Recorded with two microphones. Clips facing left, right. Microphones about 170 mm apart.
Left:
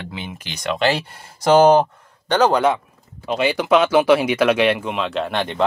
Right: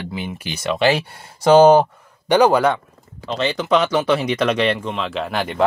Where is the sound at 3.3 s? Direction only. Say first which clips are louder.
Left 2 dB; 10° left (ahead or behind).